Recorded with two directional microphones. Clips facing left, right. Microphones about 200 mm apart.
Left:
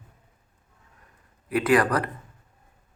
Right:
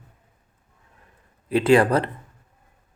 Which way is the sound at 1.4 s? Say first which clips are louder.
Right 4 dB; 25° right (ahead or behind).